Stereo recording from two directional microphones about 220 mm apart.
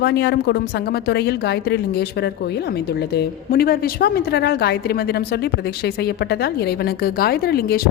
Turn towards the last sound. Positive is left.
turn(degrees=45)  # may be behind; listen again after turning